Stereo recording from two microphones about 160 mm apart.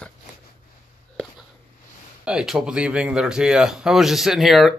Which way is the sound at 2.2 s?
5° right (ahead or behind).